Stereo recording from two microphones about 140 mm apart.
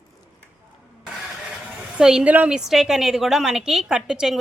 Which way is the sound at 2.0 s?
5° right (ahead or behind).